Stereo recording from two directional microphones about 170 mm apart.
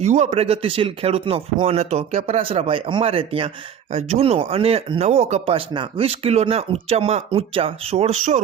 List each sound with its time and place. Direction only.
0.0 s speech: 40° right (ahead or behind)